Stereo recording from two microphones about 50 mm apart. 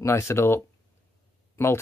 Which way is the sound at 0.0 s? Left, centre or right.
Left.